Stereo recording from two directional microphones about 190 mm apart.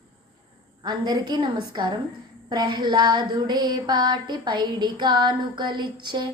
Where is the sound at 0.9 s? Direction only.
20° right (ahead or behind).